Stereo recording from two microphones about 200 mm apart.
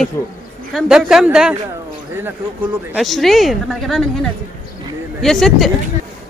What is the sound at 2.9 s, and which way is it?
Speech, centre (ahead or behind).